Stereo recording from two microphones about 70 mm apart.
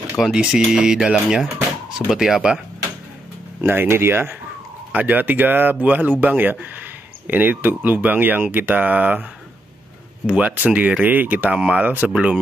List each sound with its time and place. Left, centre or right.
0.2 s speech: centre
3.6 s speech: right
10.2 s speech: centre